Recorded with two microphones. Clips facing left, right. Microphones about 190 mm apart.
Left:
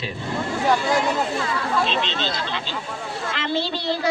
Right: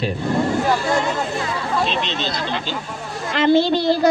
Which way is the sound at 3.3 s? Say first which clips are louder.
Right 11 dB; 45° right (ahead or behind).